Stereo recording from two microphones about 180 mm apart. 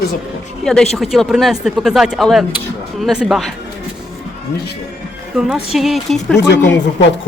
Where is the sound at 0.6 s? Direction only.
5° left (ahead or behind).